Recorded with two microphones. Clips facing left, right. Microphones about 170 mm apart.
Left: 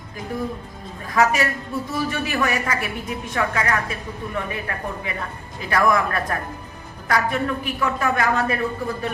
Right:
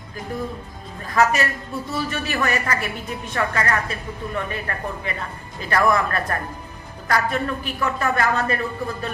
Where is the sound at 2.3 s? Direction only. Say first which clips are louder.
Even; 10° left (ahead or behind).